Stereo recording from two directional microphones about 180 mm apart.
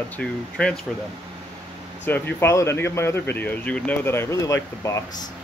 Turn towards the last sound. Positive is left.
turn(degrees=20)  # may be behind; listen again after turning